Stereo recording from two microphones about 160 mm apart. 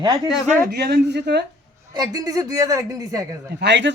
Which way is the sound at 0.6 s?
85° right.